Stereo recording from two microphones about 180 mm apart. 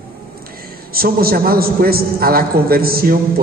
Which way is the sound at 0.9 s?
55° right (ahead or behind).